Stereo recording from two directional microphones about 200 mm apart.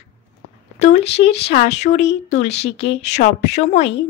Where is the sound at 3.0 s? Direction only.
35° left (ahead or behind).